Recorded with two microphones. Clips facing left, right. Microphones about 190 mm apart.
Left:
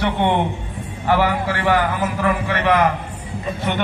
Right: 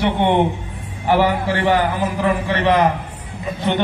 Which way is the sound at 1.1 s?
20° right (ahead or behind).